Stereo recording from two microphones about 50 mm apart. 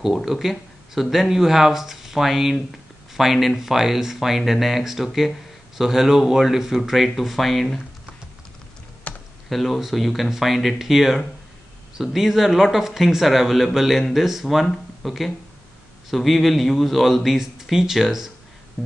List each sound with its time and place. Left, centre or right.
0.0 s speech: centre
9.1 s computer keyboard: left
9.5 s speech: centre
18.8 s music: centre